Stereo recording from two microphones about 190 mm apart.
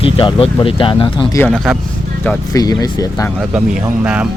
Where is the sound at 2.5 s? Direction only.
20° left (ahead or behind).